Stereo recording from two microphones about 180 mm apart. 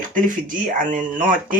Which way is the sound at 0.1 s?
45° right (ahead or behind).